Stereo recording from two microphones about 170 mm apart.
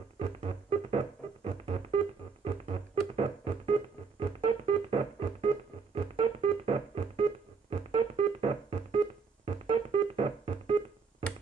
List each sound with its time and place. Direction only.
0.2 s music: 35° right (ahead or behind)